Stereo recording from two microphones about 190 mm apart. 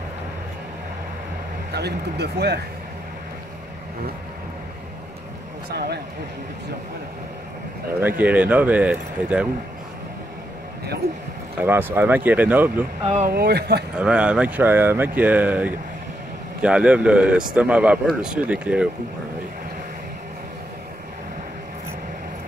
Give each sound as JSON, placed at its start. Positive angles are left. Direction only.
{"t": 1.7, "sound": "speech", "side_deg": -60}
{"t": 8.2, "sound": "speech", "side_deg": -10}
{"t": 11.6, "sound": "speech", "side_deg": -10}
{"t": 13.0, "sound": "speech", "side_deg": -35}
{"t": 13.3, "sound": "speech", "side_deg": -55}
{"t": 13.9, "sound": "speech", "side_deg": -5}